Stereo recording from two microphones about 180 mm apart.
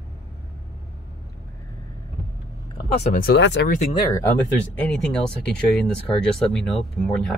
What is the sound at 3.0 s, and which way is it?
Speech, 50° left (ahead or behind).